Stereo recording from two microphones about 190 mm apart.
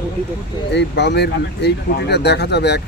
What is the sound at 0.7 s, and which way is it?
A man's voice, 65° left (ahead or behind).